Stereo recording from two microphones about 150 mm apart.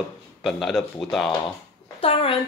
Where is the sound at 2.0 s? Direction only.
40° left (ahead or behind).